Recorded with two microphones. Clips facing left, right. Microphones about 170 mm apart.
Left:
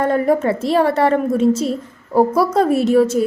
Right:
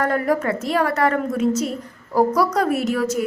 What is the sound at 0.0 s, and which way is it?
A woman's voice, 25° left (ahead or behind).